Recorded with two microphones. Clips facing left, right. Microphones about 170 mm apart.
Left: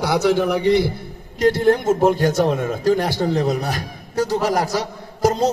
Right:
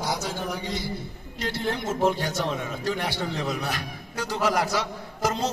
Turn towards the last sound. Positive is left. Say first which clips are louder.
# left 8 dB
turn(degrees=40)  # may be behind; listen again after turning